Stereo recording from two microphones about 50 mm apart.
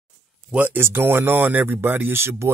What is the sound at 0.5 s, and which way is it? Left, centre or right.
Speech, right.